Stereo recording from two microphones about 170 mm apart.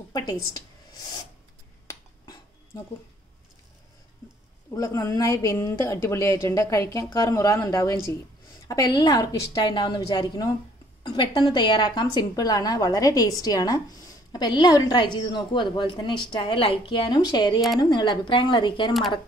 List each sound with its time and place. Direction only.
1.9 s finger snapping: 20° left (ahead or behind)
4.7 s a woman's voice: 20° left (ahead or behind)